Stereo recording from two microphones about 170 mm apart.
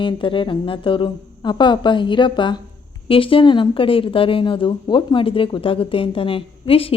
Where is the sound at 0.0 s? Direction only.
30° left (ahead or behind).